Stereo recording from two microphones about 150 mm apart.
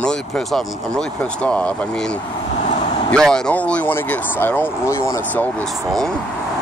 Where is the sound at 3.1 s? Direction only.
5° left (ahead or behind).